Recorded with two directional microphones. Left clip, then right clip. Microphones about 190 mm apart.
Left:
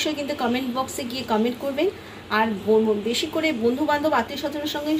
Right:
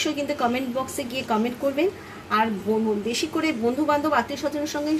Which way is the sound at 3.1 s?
45° right (ahead or behind).